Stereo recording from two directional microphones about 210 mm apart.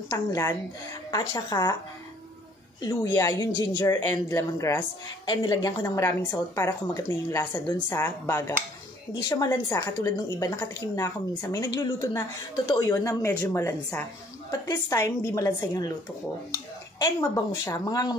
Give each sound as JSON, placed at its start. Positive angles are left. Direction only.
{"t": 0.1, "sound": "a woman's voice", "side_deg": 15}
{"t": 2.8, "sound": "a woman's voice", "side_deg": 20}
{"t": 17.0, "sound": "speech", "side_deg": 20}